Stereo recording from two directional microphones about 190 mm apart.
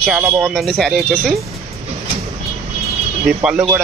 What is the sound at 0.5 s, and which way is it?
Speech, centre (ahead or behind).